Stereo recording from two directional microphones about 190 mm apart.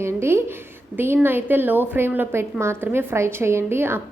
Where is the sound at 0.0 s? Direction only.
15° right (ahead or behind).